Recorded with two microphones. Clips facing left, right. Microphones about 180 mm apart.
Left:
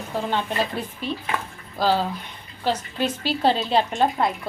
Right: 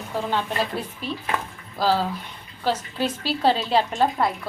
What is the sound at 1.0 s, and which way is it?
Speech, 5° right (ahead or behind).